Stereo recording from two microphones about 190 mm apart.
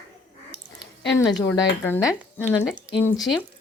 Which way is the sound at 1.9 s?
10° left (ahead or behind).